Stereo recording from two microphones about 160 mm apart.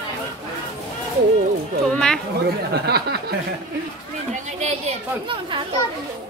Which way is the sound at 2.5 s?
85° right.